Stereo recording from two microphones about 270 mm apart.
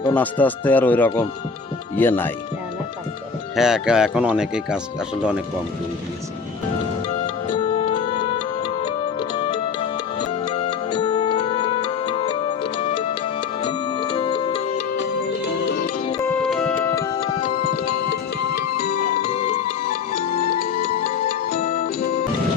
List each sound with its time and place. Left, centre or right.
0.0 s speech: centre
3.5 s speech: centre
7.6 s music: centre
10.2 s music: centre
13.6 s music: centre
16.2 s music: centre
17.4 s music: left
19.2 s music: left